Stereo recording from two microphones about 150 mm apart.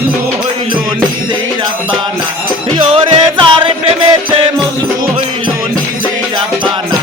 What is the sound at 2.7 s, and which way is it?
Music, 35° right (ahead or behind).